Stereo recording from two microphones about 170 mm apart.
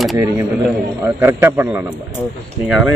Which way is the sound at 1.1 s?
15° right (ahead or behind).